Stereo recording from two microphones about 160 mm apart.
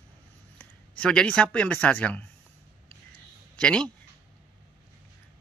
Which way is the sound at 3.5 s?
5° left (ahead or behind).